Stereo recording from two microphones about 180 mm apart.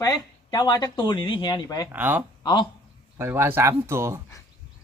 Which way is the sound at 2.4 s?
25° left (ahead or behind).